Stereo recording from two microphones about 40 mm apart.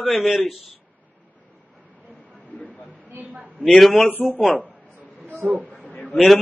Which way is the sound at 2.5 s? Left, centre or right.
Left.